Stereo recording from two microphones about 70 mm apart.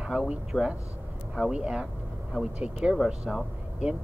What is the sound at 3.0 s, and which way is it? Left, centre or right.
Speech, centre.